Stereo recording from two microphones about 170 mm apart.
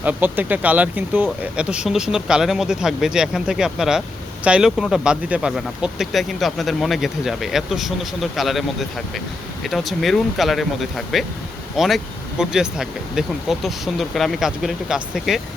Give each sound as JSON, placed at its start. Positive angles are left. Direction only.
{"t": 0.0, "sound": "speech", "side_deg": -10}